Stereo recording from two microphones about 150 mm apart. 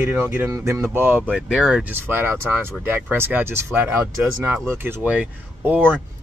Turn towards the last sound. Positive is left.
turn(degrees=-10)  # may be behind; listen again after turning